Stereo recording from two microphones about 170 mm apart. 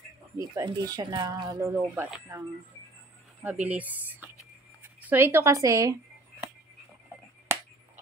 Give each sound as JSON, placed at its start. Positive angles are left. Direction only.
{"t": 0.4, "sound": "speech", "side_deg": -20}
{"t": 3.4, "sound": "speech", "side_deg": -10}